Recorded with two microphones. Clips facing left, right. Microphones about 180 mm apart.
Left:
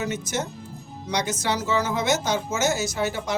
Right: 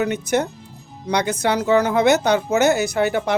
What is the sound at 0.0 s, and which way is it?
Speech, 60° right (ahead or behind).